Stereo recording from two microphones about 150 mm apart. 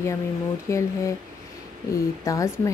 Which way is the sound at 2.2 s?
20° left (ahead or behind).